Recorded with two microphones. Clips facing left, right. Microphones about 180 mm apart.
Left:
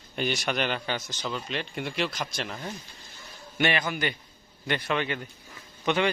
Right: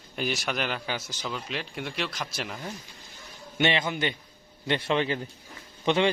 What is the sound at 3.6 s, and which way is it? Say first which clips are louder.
Speech: right 1 dB; 25° right (ahead or behind).